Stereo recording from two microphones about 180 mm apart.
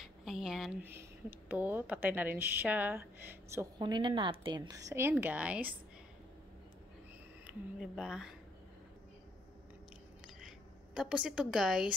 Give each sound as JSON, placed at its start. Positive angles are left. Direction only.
{"t": 0.0, "sound": "speech", "side_deg": 0}
{"t": 3.8, "sound": "a woman's voice", "side_deg": -25}
{"t": 7.4, "sound": "a woman's voice", "side_deg": 0}
{"t": 11.0, "sound": "a woman's voice", "side_deg": -5}